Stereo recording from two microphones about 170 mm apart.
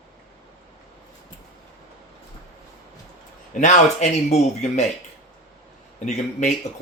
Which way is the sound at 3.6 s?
45° left (ahead or behind).